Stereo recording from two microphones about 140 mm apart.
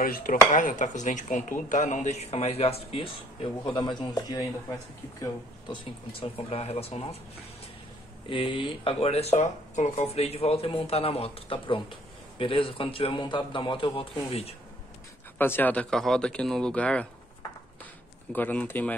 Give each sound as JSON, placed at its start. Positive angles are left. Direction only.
{"t": 0.0, "sound": "dishes", "side_deg": 90}
{"t": 0.5, "sound": "speech", "side_deg": 65}
{"t": 8.3, "sound": "speech", "side_deg": 40}
{"t": 15.3, "sound": "speech", "side_deg": 15}
{"t": 18.3, "sound": "speech", "side_deg": 10}